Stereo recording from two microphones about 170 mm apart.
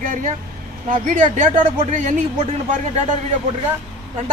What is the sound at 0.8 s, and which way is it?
A man's voice, 50° right (ahead or behind).